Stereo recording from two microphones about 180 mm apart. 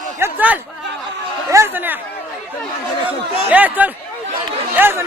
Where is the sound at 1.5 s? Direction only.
15° right (ahead or behind).